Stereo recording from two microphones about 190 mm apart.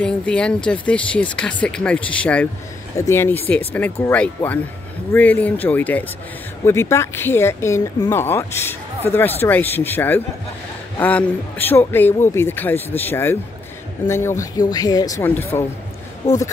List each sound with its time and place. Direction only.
0.0 s speech: 5° left (ahead or behind)